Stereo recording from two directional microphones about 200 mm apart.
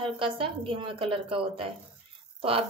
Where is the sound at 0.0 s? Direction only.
25° right (ahead or behind).